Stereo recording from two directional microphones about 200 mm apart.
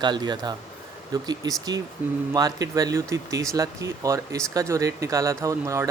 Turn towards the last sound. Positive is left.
turn(degrees=-15)  # may be behind; listen again after turning